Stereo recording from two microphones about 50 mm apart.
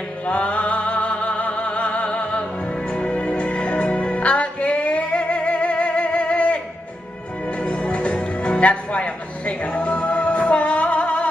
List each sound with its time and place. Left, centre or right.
0.2 s music: left